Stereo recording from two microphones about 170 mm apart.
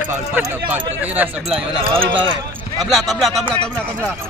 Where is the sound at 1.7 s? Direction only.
30° right (ahead or behind).